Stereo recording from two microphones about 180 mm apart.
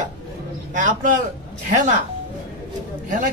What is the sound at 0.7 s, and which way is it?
A man's voice, 45° right (ahead or behind).